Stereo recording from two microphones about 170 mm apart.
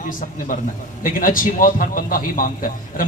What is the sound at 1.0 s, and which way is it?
A man's voice, 55° left (ahead or behind).